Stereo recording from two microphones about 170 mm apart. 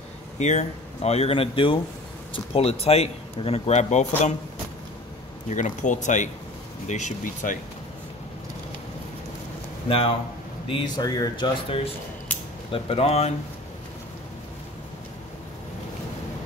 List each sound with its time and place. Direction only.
0.4 s speech: 40° left (ahead or behind)
5.5 s speech: 45° left (ahead or behind)
9.8 s speech: 35° left (ahead or behind)
12.7 s speech: 35° left (ahead or behind)